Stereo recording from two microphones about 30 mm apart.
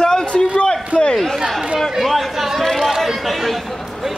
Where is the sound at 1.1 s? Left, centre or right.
Centre.